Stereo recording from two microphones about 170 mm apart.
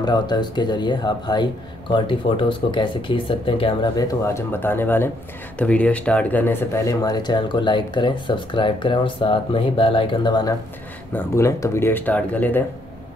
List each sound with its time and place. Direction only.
0.0 s speech: 25° left (ahead or behind)